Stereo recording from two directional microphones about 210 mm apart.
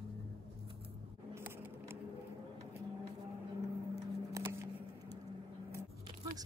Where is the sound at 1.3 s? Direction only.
10° right (ahead or behind).